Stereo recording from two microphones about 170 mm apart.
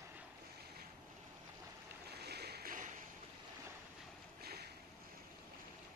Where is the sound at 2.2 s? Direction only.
70° right (ahead or behind); by 2.9 s 50° right (ahead or behind).